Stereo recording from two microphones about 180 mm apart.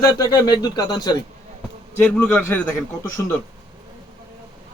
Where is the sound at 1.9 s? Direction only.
10° left (ahead or behind).